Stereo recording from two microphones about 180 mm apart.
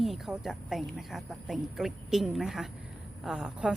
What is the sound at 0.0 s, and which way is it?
Speech, centre (ahead or behind).